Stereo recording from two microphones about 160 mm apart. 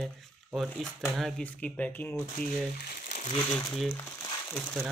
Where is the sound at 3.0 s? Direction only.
45° left (ahead or behind).